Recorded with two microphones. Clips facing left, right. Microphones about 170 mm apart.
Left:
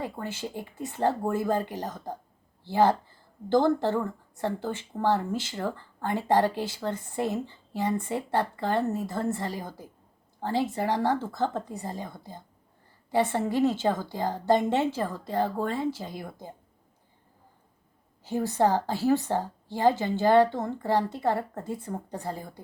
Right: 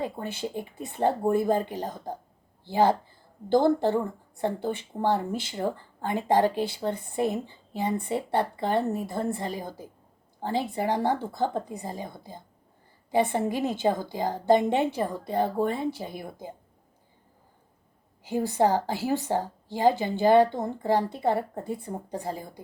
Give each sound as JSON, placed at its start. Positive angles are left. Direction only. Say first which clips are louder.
{"t": 0.0, "sound": "a woman's voice", "louder": "right 2 dB", "side_deg": -20}
{"t": 18.2, "sound": "a woman's voice", "louder": "right 1 dB", "side_deg": -15}